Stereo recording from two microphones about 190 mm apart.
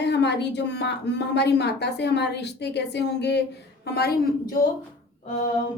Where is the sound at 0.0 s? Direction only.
65° left (ahead or behind).